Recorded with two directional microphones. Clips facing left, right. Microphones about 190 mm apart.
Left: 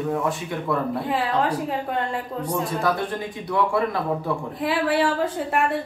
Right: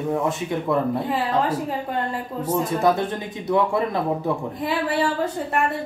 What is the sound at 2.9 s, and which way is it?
Speech, 20° right (ahead or behind).